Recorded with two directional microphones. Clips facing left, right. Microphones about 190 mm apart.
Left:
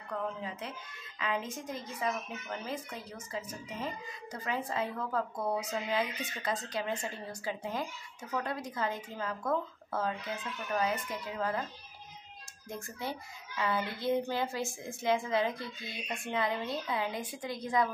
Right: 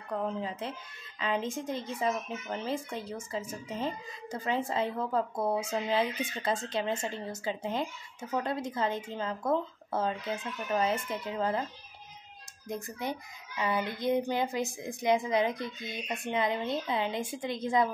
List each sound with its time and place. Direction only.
0.1 s a woman's voice: 30° right (ahead or behind)
12.6 s a woman's voice: 15° right (ahead or behind)